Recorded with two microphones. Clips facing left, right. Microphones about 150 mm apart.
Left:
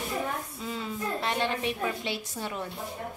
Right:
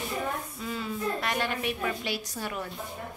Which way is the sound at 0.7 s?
25° left (ahead or behind).